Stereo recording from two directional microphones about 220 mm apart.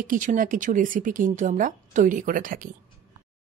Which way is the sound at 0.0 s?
35° right (ahead or behind).